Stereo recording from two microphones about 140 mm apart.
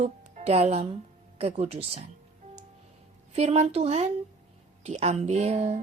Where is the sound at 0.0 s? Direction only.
50° right (ahead or behind).